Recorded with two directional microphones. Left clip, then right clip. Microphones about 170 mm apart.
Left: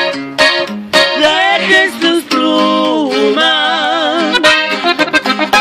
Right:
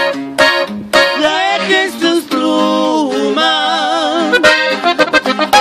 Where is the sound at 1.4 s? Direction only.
5° left (ahead or behind).